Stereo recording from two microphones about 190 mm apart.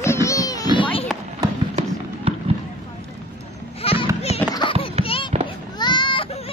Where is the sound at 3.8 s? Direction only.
30° left (ahead or behind).